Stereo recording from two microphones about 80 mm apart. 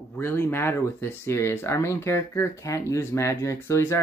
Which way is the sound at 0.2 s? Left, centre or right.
Left.